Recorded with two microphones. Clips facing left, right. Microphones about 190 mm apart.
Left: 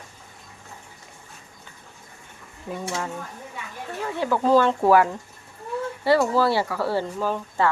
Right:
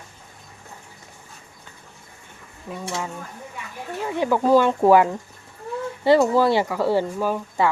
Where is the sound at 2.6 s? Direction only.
5° right (ahead or behind).